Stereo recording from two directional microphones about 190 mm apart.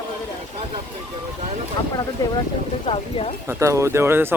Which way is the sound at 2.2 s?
15° left (ahead or behind).